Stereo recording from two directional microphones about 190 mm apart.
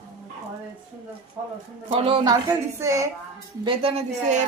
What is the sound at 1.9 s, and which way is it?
Speech, 30° right (ahead or behind).